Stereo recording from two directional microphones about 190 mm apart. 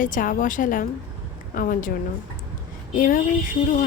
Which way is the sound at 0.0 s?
45° left (ahead or behind).